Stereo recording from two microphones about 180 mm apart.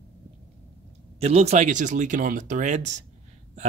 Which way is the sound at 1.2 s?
35° right (ahead or behind).